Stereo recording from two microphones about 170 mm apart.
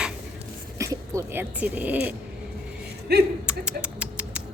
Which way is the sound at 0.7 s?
20° right (ahead or behind).